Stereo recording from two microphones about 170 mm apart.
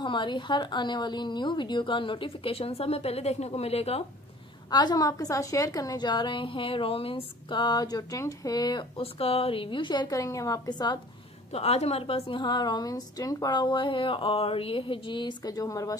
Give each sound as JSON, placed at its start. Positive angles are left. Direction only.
{"t": 0.0, "sound": "a woman's voice", "side_deg": 25}
{"t": 4.6, "sound": "a woman's voice", "side_deg": 25}
{"t": 11.5, "sound": "a woman's voice", "side_deg": 40}